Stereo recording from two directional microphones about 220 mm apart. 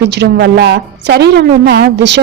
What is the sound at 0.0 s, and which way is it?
A woman's voice, 50° right (ahead or behind).